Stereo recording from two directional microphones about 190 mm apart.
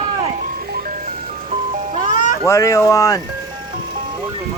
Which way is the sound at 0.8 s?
40° right (ahead or behind).